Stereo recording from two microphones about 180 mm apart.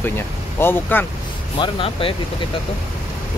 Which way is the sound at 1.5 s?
30° left (ahead or behind).